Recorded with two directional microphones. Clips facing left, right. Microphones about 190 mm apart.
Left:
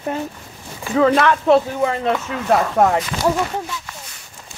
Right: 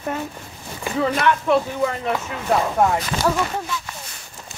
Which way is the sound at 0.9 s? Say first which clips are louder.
Left 5 dB; 90° left.